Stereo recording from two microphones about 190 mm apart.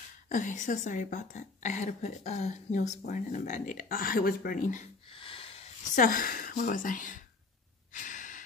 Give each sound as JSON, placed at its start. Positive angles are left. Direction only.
{"t": 0.3, "sound": "a woman's voice", "side_deg": 40}
{"t": 5.1, "sound": "a sound", "side_deg": 30}
{"t": 5.9, "sound": "speech", "side_deg": 45}
{"t": 7.9, "sound": "breathing", "side_deg": 45}